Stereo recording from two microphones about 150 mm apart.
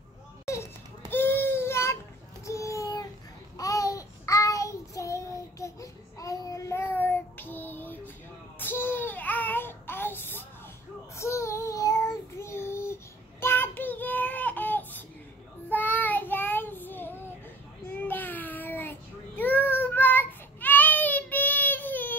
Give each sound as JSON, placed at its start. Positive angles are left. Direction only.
{"t": 1.1, "sound": "a sound", "side_deg": 15}
{"t": 3.5, "sound": "child singing", "side_deg": 20}
{"t": 8.5, "sound": "babbling", "side_deg": 15}
{"t": 11.1, "sound": "child singing", "side_deg": 20}